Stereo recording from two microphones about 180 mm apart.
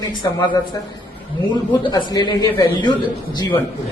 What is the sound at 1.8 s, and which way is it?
A man's voice, 25° left (ahead or behind).